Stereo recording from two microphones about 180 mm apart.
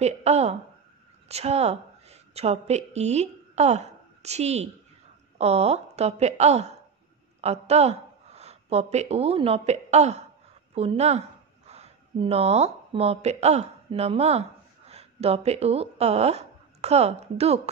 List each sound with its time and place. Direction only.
0.0 s a woman's voice: 35° right (ahead or behind)